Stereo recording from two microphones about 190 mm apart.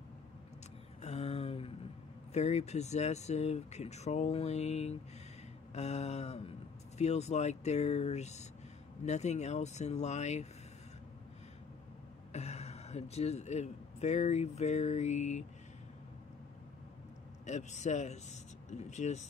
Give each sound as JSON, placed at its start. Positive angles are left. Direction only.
{"t": 1.0, "sound": "a sound", "side_deg": 35}
{"t": 2.3, "sound": "speech", "side_deg": 35}
{"t": 12.3, "sound": "speech", "side_deg": 35}
{"t": 17.5, "sound": "speech", "side_deg": 40}